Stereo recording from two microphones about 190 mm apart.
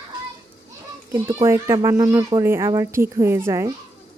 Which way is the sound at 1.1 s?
15° right (ahead or behind).